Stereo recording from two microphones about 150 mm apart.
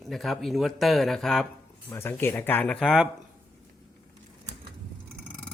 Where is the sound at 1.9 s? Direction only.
15° left (ahead or behind).